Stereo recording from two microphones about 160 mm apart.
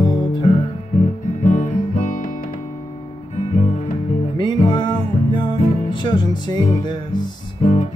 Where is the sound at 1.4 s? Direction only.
50° left (ahead or behind).